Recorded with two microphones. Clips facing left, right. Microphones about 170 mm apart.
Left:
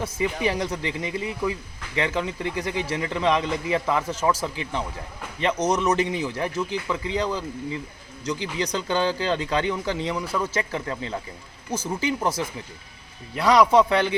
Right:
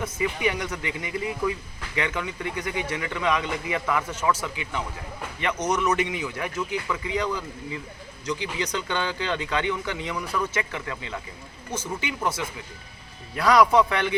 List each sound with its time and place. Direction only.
0.0 s a man's voice: 30° left (ahead or behind)
13.3 s a man's voice: 20° left (ahead or behind)